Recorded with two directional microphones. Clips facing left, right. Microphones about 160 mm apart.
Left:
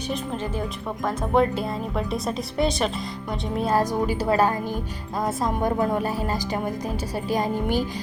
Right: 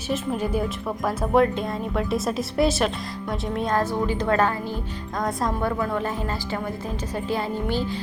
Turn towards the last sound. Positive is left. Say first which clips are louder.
# left 2 dB
turn(degrees=15)  # may be behind; listen again after turning